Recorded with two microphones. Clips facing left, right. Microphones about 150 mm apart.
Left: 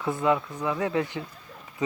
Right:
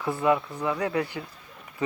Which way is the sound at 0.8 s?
20° left (ahead or behind).